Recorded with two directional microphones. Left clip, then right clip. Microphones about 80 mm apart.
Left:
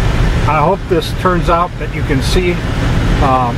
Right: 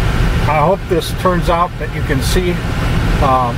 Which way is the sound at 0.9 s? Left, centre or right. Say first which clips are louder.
Left 1 dB; centre.